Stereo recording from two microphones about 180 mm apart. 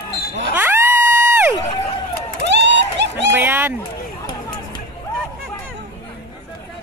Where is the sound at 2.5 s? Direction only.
75° right (ahead or behind).